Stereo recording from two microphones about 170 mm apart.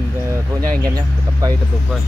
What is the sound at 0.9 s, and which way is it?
Speech, 20° right (ahead or behind).